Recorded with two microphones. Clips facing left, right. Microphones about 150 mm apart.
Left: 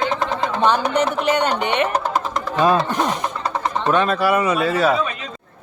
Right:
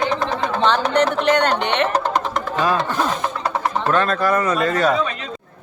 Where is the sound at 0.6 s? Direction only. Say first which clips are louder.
Right 1 dB; 10° left (ahead or behind).